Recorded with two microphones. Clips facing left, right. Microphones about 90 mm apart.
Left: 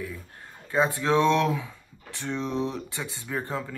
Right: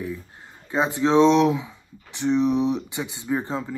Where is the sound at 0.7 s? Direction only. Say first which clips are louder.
Right 2 dB; 20° right (ahead or behind).